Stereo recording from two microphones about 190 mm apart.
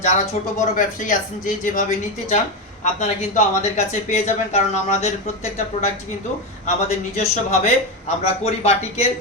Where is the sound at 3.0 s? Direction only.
35° left (ahead or behind).